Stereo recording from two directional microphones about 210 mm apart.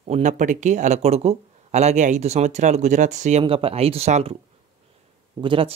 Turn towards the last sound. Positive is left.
turn(degrees=-25)  # may be behind; listen again after turning